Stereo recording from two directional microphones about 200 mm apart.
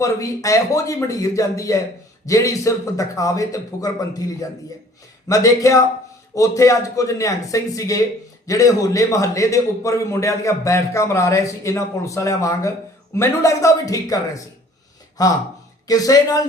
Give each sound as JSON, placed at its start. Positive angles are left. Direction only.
{"t": 0.0, "sound": "a man's voice", "side_deg": 15}